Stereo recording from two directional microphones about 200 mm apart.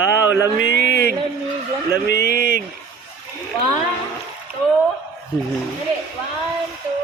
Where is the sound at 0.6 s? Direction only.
50° right (ahead or behind).